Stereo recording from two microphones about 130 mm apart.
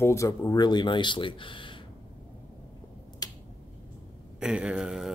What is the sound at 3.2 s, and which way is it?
Finger snapping, 30° left (ahead or behind).